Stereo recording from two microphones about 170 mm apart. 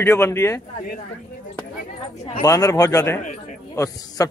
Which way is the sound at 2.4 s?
20° left (ahead or behind).